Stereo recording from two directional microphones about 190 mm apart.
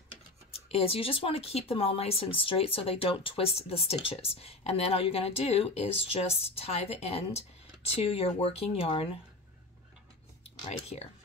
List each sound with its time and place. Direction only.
0.7 s speech: 30° left (ahead or behind)
10.4 s speech: 35° left (ahead or behind)